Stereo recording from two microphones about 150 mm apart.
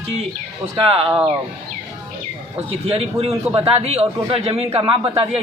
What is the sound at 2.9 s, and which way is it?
A man's voice, 40° right (ahead or behind).